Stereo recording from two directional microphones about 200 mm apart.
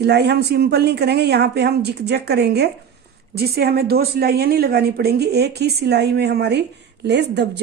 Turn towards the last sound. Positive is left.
turn(degrees=-60)  # may be behind; listen again after turning